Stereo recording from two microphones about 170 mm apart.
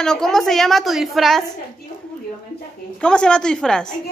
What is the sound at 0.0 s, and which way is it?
A woman's voice, 5° left (ahead or behind).